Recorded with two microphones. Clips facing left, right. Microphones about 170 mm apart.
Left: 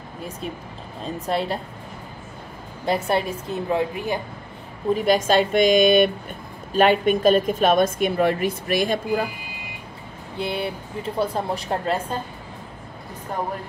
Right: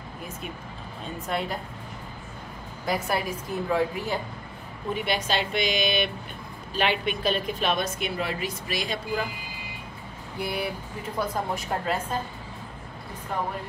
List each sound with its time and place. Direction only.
1.0 s a woman's voice: 35° left (ahead or behind)
2.8 s speech: 25° left (ahead or behind)
4.9 s a woman's voice: 40° left (ahead or behind)
10.3 s speech: 25° left (ahead or behind)